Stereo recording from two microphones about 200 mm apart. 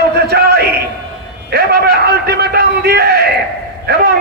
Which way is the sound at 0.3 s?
55° right (ahead or behind).